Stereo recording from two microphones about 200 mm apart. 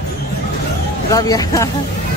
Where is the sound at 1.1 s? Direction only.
20° left (ahead or behind).